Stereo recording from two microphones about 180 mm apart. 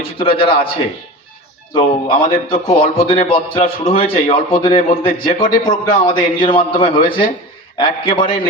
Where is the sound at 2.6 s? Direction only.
35° left (ahead or behind).